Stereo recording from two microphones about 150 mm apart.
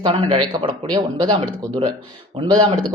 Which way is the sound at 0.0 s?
35° right (ahead or behind).